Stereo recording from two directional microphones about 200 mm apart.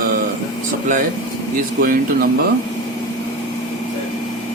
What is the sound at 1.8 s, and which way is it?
Speech, 45° right (ahead or behind).